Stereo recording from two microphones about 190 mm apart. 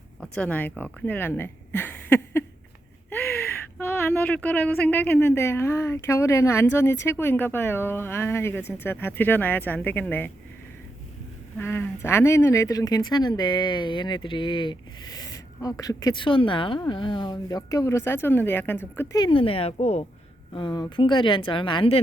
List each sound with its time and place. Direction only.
0.2 s speech: 5° left (ahead or behind)
3.8 s speech: 10° left (ahead or behind)
11.5 s speech: 10° left (ahead or behind)
19.2 s speech: 25° left (ahead or behind)